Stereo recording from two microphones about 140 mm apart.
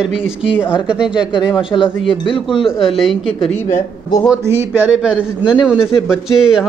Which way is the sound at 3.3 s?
40° left (ahead or behind).